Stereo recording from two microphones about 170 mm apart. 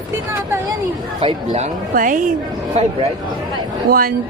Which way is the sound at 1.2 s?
35° right (ahead or behind).